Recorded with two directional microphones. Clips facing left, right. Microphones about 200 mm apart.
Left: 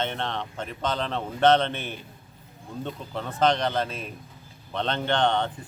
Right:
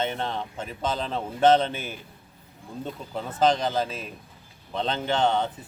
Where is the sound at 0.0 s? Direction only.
5° right (ahead or behind).